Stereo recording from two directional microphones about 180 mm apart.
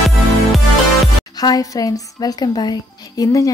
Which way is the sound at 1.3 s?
20° left (ahead or behind).